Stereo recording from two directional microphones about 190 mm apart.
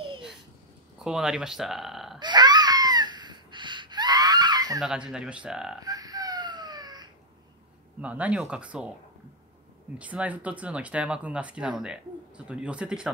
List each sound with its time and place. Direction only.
0.9 s speech: 5° right (ahead or behind)
2.1 s a sound: 25° right (ahead or behind)
4.7 s speech: 5° right (ahead or behind)
5.9 s crying: 20° right (ahead or behind)
8.0 s speech: 5° right (ahead or behind)
9.9 s speech: 5° right (ahead or behind)